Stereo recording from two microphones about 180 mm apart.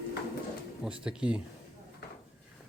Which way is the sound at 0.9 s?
5° right (ahead or behind).